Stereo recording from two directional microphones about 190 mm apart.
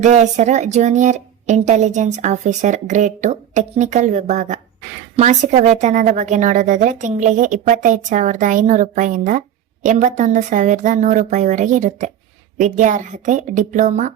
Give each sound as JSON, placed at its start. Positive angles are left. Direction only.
{"t": 0.0, "sound": "a woman's voice", "side_deg": -40}